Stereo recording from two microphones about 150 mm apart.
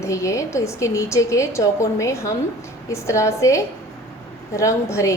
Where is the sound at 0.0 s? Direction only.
20° left (ahead or behind).